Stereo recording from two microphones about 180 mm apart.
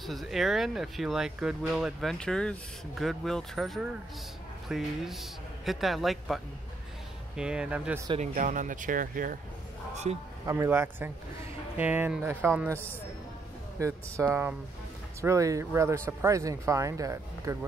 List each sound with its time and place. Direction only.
0.0 s speech: centre (ahead or behind)
8.1 s speech: 40° right (ahead or behind)
10.1 s a man's voice: 35° right (ahead or behind)
10.4 s speech: 15° right (ahead or behind)
13.7 s speech: 15° right (ahead or behind)